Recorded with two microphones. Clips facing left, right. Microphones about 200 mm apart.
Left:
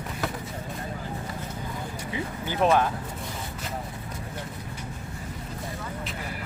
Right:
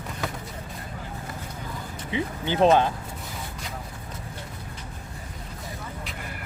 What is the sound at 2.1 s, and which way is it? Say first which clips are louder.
Speech: right 6 dB; 25° right (ahead or behind).